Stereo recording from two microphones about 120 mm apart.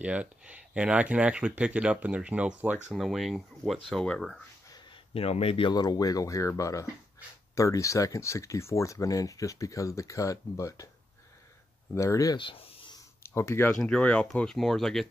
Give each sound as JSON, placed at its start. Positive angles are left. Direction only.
{"t": 0.0, "sound": "speech", "side_deg": -10}
{"t": 5.1, "sound": "speech", "side_deg": 55}
{"t": 5.7, "sound": "speech", "side_deg": 35}
{"t": 11.9, "sound": "speech", "side_deg": 25}
{"t": 12.4, "sound": "a sound", "side_deg": 50}
{"t": 13.2, "sound": "speech", "side_deg": 20}
{"t": 13.7, "sound": "speech", "side_deg": 5}